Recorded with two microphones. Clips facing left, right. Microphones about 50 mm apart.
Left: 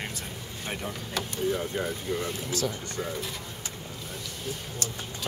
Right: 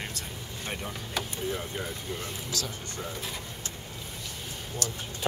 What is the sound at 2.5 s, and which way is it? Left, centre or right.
Speech, left.